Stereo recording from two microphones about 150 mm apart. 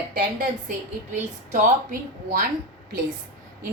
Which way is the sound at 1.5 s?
65° right (ahead or behind).